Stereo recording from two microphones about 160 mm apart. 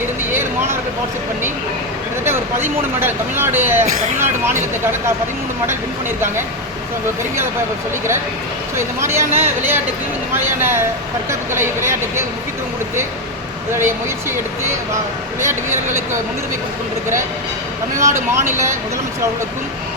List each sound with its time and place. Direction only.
2.2 s speech: 15° right (ahead or behind)
3.8 s speech: 45° right (ahead or behind)
8.7 s speech: 15° right (ahead or behind)
13.7 s speech: 15° right (ahead or behind)
17.9 s speech: 15° right (ahead or behind)